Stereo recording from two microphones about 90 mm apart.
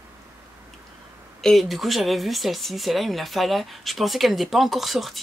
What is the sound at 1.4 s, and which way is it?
Speech, centre (ahead or behind).